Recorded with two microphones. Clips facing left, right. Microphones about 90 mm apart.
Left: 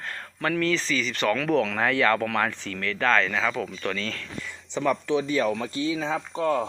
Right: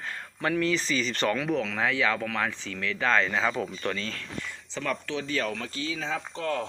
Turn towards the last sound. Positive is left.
turn(degrees=15)  # may be behind; listen again after turning